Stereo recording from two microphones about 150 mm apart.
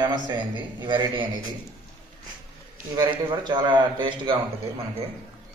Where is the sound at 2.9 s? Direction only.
30° right (ahead or behind).